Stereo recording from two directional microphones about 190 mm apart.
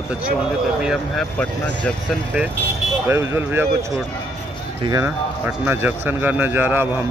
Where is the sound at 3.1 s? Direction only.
15° right (ahead or behind).